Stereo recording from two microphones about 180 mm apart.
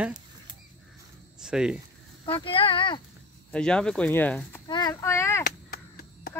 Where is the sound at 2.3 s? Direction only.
30° left (ahead or behind).